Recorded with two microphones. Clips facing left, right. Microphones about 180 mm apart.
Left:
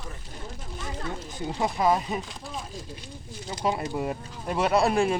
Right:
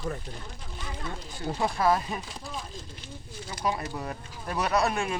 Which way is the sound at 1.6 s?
15° left (ahead or behind).